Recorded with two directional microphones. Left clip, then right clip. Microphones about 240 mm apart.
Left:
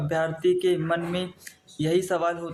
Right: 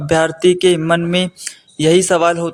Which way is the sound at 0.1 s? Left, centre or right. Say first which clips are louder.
Right 11 dB; right.